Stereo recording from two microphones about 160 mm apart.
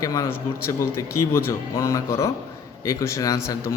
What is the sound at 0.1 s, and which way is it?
A man's voice, 15° left (ahead or behind).